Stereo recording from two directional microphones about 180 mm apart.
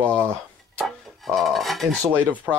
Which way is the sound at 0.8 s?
Centre (ahead or behind).